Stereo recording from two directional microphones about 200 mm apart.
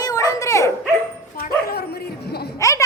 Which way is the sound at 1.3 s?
50° left (ahead or behind).